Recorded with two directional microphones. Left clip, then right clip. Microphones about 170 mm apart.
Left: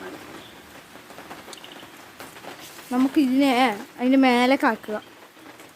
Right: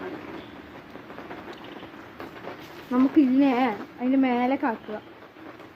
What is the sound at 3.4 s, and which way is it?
Speech, 65° left (ahead or behind).